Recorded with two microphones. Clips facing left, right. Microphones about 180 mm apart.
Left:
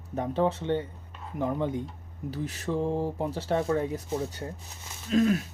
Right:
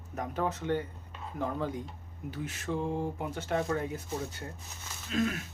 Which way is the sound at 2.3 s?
35° left (ahead or behind).